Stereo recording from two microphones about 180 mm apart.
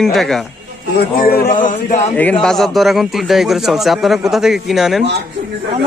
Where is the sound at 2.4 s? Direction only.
Centre (ahead or behind).